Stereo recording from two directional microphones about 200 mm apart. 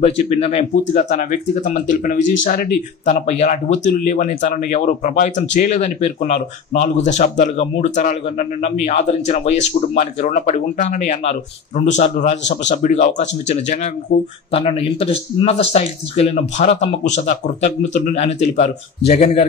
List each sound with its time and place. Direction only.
0.0 s speech: 30° left (ahead or behind)